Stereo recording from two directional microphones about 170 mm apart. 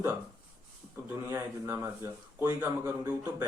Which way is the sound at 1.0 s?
15° right (ahead or behind).